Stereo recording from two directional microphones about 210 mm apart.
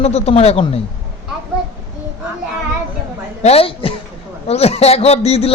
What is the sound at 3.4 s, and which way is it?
Speech, 25° left (ahead or behind).